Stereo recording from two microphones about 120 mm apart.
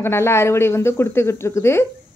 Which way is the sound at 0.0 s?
20° left (ahead or behind).